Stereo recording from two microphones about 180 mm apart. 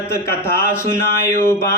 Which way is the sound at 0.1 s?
15° left (ahead or behind).